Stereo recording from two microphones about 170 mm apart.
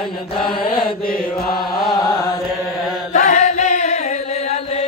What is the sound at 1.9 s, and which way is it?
Chant, 20° left (ahead or behind).